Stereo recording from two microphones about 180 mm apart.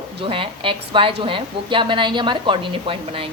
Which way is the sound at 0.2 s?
30° right (ahead or behind).